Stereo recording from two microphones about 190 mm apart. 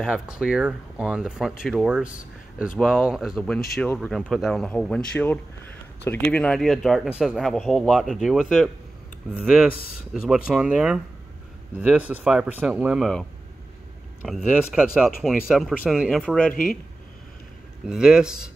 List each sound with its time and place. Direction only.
0.0 s speech: centre (ahead or behind)
17.8 s speech: 5° right (ahead or behind)